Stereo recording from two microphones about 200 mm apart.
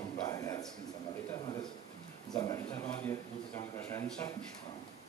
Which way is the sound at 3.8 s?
10° left (ahead or behind).